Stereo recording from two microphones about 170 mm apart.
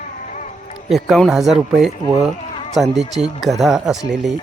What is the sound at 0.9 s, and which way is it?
Speech, centre (ahead or behind).